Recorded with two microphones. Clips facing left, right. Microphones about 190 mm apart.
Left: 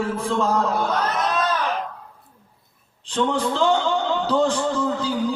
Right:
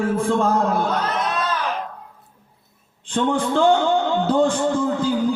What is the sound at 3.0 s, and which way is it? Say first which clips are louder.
A man's voice: right 1 dB; 50° right (ahead or behind).